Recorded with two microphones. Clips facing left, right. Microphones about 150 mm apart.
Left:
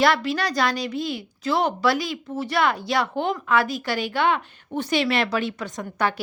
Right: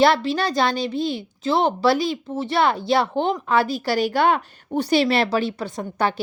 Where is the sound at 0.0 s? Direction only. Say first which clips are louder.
Right 3 dB; 30° right (ahead or behind).